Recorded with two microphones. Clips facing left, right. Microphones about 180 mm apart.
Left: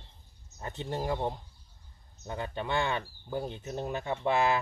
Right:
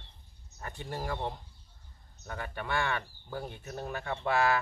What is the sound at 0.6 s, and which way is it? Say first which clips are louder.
Speech: left 4 dB; 20° left (ahead or behind).